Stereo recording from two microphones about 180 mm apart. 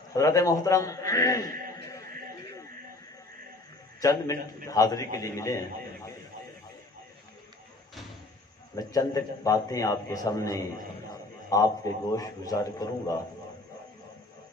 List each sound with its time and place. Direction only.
0.1 s a man's voice: 15° left (ahead or behind)
1.8 s music: 20° left (ahead or behind)
4.0 s a man's voice: 20° left (ahead or behind)
8.7 s a man's voice: 20° left (ahead or behind)